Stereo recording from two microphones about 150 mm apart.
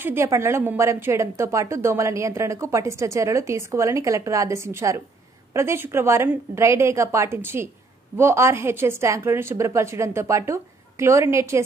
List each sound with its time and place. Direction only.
0.0 s a woman's voice: 15° right (ahead or behind)